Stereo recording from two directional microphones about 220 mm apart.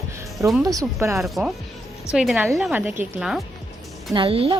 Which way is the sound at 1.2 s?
Centre (ahead or behind).